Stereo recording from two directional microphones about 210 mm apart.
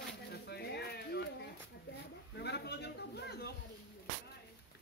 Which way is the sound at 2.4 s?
55° left (ahead or behind).